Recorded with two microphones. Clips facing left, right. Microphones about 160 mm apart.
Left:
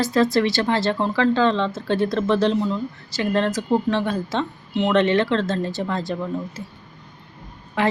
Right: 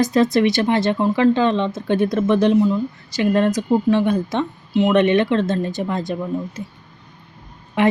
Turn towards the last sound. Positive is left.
turn(degrees=-20)  # may be behind; listen again after turning